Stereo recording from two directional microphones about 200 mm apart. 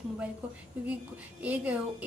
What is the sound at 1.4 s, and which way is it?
Speech, 5° right (ahead or behind).